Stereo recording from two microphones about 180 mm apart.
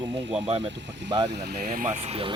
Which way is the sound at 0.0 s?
75° right (ahead or behind).